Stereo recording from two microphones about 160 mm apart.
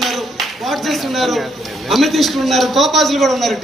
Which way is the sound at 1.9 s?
Centre (ahead or behind).